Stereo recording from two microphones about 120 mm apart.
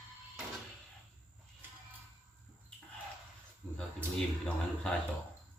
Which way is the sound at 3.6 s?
10° right (ahead or behind).